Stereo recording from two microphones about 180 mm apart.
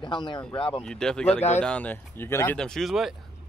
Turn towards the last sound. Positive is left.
turn(degrees=0)  # may be behind; listen again after turning